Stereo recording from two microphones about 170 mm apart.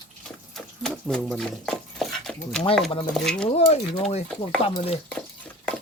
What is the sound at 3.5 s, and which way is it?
Speech, 35° left (ahead or behind).